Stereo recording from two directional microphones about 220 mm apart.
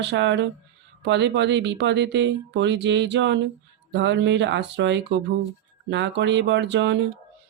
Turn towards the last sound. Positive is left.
turn(degrees=-55)  # may be behind; listen again after turning